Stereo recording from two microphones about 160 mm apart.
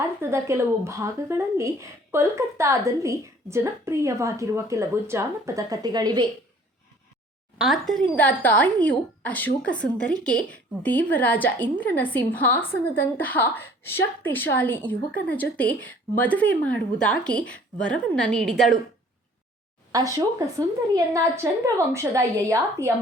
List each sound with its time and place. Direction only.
0.2 s a woman's voice: 15° right (ahead or behind)
7.6 s a woman's voice: centre (ahead or behind)
19.9 s a woman's voice: 20° right (ahead or behind)